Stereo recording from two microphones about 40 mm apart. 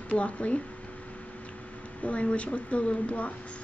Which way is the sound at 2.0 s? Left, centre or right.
Left.